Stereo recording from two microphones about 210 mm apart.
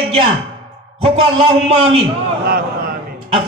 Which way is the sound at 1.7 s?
25° right (ahead or behind).